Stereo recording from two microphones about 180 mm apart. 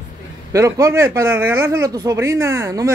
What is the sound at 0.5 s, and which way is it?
Speech, 15° right (ahead or behind).